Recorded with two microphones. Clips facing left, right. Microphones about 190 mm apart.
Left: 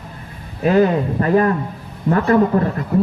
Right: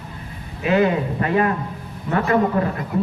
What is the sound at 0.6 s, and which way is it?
A man's voice, 40° left (ahead or behind).